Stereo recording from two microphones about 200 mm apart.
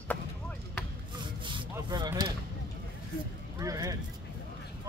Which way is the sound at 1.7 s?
20° right (ahead or behind).